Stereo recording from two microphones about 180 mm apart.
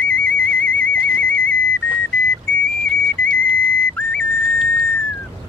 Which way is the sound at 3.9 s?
5° left (ahead or behind).